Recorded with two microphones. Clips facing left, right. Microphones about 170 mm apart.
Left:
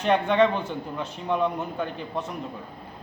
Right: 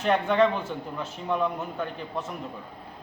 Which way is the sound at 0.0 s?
5° right (ahead or behind).